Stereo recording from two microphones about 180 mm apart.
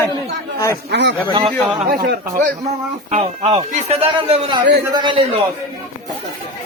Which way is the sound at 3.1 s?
35° right (ahead or behind).